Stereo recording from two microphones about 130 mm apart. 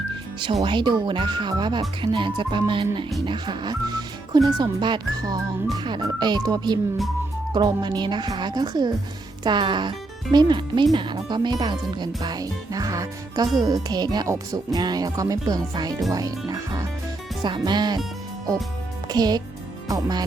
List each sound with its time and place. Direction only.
0.6 s speech: 40° right (ahead or behind)
19.0 s speech: 30° right (ahead or behind)